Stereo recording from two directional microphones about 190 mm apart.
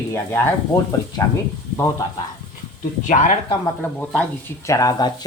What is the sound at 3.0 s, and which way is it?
Speech, 40° left (ahead or behind).